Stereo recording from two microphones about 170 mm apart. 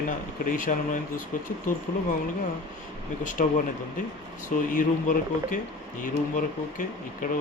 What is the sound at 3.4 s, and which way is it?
Speech, 50° left (ahead or behind).